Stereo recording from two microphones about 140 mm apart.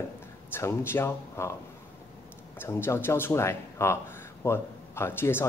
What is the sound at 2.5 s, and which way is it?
Speech, 20° left (ahead or behind).